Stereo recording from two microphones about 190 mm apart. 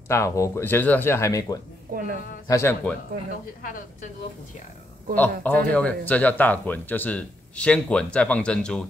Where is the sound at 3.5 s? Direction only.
45° left (ahead or behind).